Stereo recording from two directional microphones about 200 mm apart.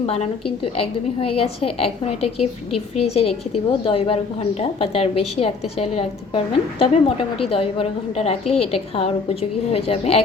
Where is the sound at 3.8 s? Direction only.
30° left (ahead or behind).